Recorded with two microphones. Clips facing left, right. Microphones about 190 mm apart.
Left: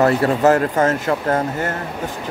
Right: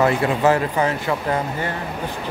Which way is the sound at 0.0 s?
40° left (ahead or behind).